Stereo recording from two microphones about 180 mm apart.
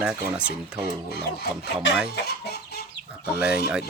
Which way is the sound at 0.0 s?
5° right (ahead or behind).